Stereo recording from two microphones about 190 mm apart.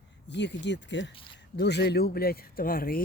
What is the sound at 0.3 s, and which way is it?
Speech, 65° left (ahead or behind).